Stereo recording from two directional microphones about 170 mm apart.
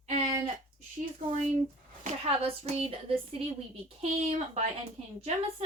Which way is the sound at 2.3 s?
35° right (ahead or behind).